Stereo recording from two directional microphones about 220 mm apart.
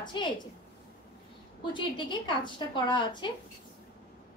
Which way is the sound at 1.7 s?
20° left (ahead or behind).